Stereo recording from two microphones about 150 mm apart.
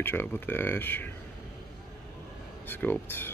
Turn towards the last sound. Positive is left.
turn(degrees=15)  # may be behind; listen again after turning